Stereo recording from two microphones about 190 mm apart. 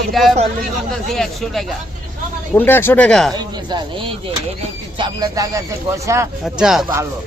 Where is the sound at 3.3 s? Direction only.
20° right (ahead or behind).